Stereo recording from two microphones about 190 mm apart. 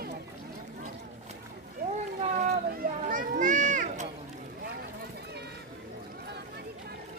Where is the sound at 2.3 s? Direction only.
40° right (ahead or behind).